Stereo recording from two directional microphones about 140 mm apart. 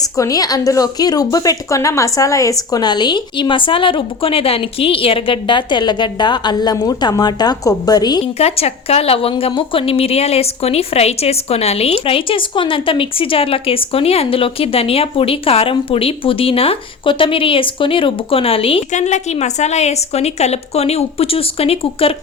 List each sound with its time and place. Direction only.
0.0 s a woman's voice: 25° left (ahead or behind)
8.2 s a woman's voice: 45° left (ahead or behind)
18.9 s a woman's voice: 55° left (ahead or behind)